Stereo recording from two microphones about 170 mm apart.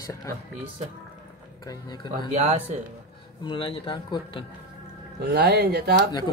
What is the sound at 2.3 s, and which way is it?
Speech, 40° right (ahead or behind).